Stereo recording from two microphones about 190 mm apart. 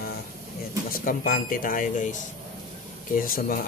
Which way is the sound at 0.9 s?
50° left (ahead or behind).